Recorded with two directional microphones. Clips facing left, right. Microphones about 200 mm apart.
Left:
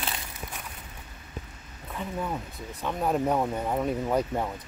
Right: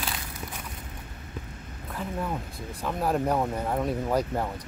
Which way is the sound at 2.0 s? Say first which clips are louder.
Right 1 dB; centre (ahead or behind).